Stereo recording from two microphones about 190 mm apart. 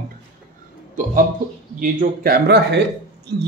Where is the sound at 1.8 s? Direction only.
50° right (ahead or behind).